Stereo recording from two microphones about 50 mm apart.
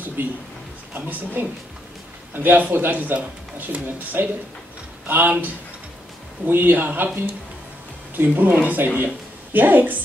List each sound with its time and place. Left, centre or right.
0.2 s speech: right
8.2 s speech: right